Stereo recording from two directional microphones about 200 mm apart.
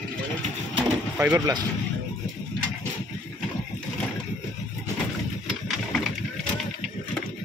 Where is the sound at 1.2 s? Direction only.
10° right (ahead or behind).